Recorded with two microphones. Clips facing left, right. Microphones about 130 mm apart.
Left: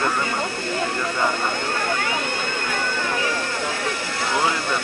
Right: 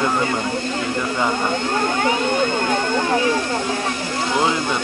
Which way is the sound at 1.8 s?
20° right (ahead or behind).